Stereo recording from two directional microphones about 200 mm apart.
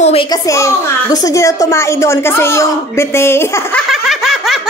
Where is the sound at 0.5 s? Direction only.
15° left (ahead or behind).